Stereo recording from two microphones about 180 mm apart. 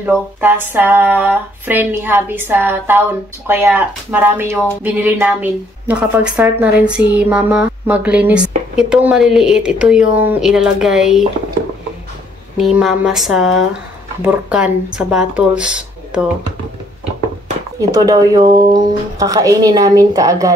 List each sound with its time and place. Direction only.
0.0 s a woman's voice: 10° right (ahead or behind)
12.5 s a woman's voice: centre (ahead or behind)
17.7 s a woman's voice: 20° right (ahead or behind)